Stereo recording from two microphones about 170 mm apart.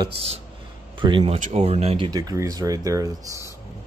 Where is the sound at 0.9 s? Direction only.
30° right (ahead or behind).